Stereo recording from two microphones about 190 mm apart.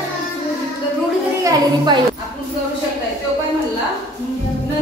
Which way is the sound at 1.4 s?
25° right (ahead or behind).